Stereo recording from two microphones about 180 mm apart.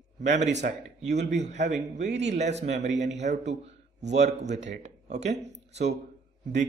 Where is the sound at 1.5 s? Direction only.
40° right (ahead or behind).